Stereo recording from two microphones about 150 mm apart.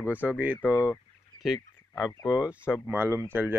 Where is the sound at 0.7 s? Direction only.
20° left (ahead or behind).